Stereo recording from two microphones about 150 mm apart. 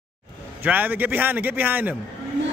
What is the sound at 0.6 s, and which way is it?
A man's voice, 10° right (ahead or behind).